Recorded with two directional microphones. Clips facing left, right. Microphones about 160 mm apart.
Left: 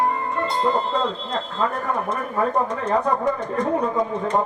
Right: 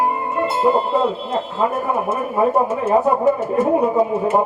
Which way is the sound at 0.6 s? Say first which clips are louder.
Right 6 dB; 10° right (ahead or behind).